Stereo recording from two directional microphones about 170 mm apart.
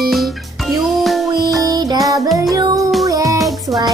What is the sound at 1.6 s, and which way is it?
Music, 20° right (ahead or behind).